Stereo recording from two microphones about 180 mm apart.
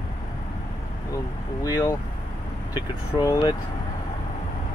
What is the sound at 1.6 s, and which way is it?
Speech, 20° left (ahead or behind).